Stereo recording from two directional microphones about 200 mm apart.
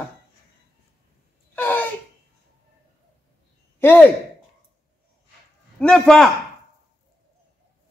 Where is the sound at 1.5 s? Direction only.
10° left (ahead or behind).